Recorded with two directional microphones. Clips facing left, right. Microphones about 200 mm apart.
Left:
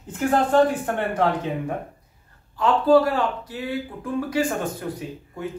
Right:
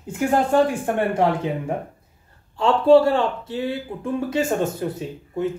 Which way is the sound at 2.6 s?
30° right (ahead or behind).